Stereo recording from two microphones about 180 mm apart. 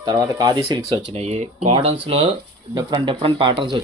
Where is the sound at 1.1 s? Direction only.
35° right (ahead or behind).